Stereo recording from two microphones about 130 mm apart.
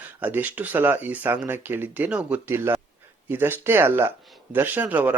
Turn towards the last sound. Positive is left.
turn(degrees=-10)  # may be behind; listen again after turning